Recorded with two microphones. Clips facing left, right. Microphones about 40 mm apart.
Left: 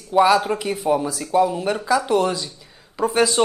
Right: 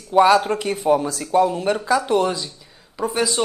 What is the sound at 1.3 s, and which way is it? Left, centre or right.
Speech, centre.